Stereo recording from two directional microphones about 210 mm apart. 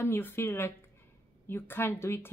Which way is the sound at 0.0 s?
10° left (ahead or behind).